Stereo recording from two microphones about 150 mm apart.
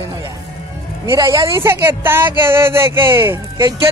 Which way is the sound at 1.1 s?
20° right (ahead or behind).